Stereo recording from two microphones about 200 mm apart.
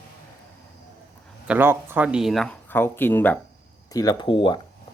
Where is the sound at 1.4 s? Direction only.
10° right (ahead or behind).